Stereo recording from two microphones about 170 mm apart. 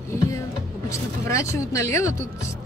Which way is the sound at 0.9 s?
15° left (ahead or behind).